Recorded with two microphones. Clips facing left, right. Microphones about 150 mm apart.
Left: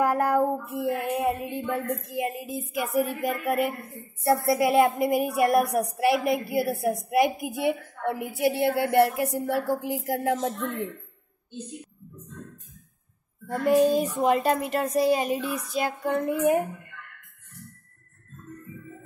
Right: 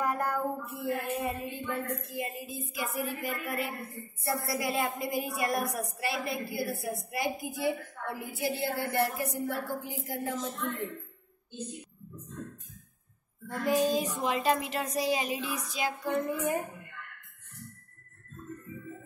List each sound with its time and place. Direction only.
0.0 s a woman's voice: 80° left
3.0 s a woman's voice: 55° left (ahead or behind)
4.0 s a woman's voice: 70° left (ahead or behind)
6.5 s a woman's voice: 85° left
7.1 s a woman's voice: 65° left (ahead or behind)
13.8 s speech: 55° left (ahead or behind); by 16.6 s 70° left (ahead or behind)